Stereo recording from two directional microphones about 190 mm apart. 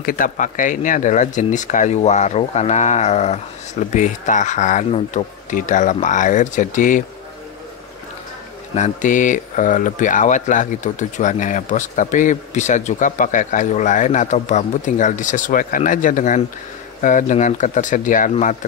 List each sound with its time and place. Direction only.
0.0 s speech: 45° left (ahead or behind)
8.7 s speech: 40° left (ahead or behind)